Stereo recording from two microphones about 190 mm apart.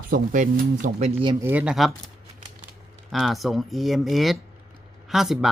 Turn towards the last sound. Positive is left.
turn(degrees=0)  # may be behind; listen again after turning